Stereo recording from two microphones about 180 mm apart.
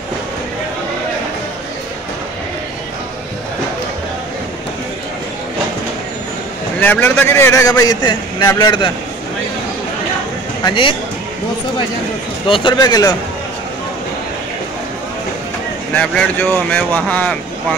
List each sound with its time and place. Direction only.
6.8 s a man's voice: 10° left (ahead or behind)
10.6 s speech: 25° left (ahead or behind)
12.4 s speech: 30° left (ahead or behind)
15.9 s a man's voice: 10° left (ahead or behind)